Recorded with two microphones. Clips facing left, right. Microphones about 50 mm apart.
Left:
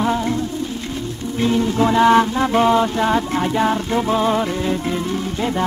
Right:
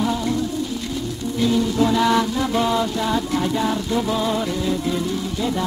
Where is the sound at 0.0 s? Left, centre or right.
Left.